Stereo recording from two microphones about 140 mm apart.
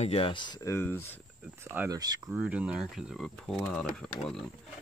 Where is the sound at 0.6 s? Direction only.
15° left (ahead or behind).